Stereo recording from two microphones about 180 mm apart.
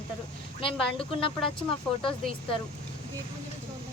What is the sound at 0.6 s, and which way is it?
Speech, 30° left (ahead or behind).